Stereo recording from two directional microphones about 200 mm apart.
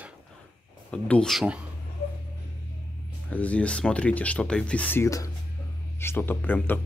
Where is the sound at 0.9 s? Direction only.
5° left (ahead or behind).